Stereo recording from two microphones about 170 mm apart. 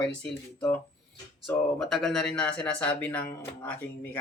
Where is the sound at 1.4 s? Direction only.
Centre (ahead or behind).